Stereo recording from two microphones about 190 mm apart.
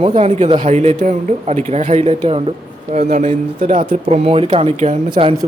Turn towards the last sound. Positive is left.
turn(degrees=-25)  # may be behind; listen again after turning